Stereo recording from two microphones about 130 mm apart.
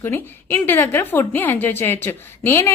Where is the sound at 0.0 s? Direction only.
15° left (ahead or behind).